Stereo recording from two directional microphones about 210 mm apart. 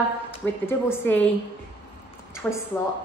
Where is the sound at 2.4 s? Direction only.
10° left (ahead or behind).